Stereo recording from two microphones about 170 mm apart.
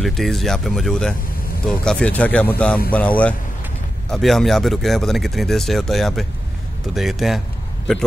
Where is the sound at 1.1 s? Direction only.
60° left (ahead or behind).